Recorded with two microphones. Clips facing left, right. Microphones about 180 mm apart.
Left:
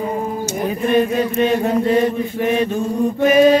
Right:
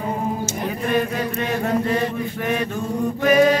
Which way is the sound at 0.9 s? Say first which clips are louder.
Left 7 dB; 25° left (ahead or behind).